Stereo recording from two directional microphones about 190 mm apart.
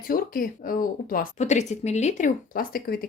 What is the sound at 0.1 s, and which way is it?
Speech, 50° left (ahead or behind).